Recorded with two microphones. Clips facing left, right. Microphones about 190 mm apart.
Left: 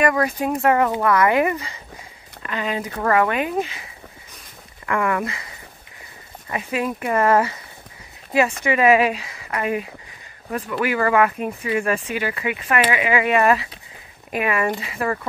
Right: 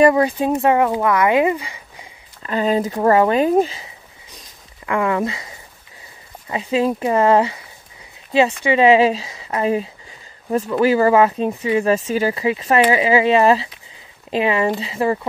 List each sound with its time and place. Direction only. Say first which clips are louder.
0.0 s speech: right 6 dB; 25° right (ahead or behind)
2.4 s speech: right 7 dB; 35° right (ahead or behind)
4.8 s speech: right 3 dB; 20° right (ahead or behind)
6.5 s speech: right 6 dB; 25° right (ahead or behind)
8.6 s speech: right 4 dB; 25° right (ahead or behind)